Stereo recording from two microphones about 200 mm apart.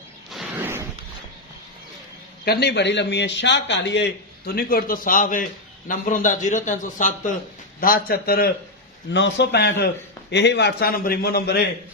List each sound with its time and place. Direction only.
0.3 s a sound: 5° right (ahead or behind)
2.4 s a man's voice: 55° left (ahead or behind)
9.1 s a man's voice: 60° left (ahead or behind)